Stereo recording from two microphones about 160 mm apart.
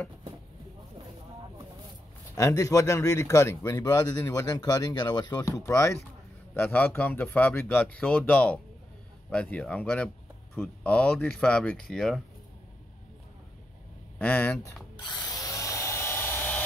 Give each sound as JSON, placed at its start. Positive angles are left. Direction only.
{"t": 2.3, "sound": "speech", "side_deg": 20}
{"t": 14.1, "sound": "speech", "side_deg": 10}
{"t": 15.0, "sound": "a sound", "side_deg": 25}